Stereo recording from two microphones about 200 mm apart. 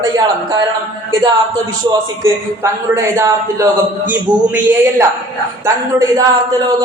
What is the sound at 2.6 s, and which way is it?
A man's voice, 15° right (ahead or behind).